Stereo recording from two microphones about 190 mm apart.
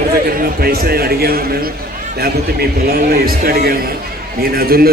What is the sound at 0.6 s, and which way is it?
A man's voice, 55° right (ahead or behind).